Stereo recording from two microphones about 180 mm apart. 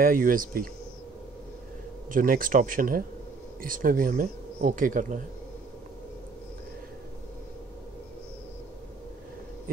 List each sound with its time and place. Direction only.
0.0 s speech: 50° right (ahead or behind)
2.0 s speech: 50° right (ahead or behind)